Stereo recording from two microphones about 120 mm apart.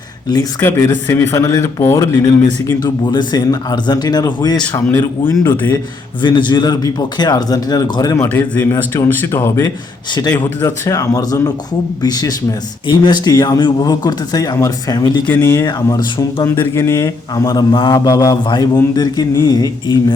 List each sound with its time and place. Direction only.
0.6 s a man's voice: 25° left (ahead or behind)
2.8 s speech: 35° left (ahead or behind)
4.9 s a man's voice: 15° left (ahead or behind)
6.2 s speech: 40° left (ahead or behind)
8.3 s a man's voice: 15° left (ahead or behind); by 15.2 s 35° left (ahead or behind)
15.3 s speech: 15° left (ahead or behind)
15.6 s speech: 40° left (ahead or behind)
16.6 s speech: 25° left (ahead or behind)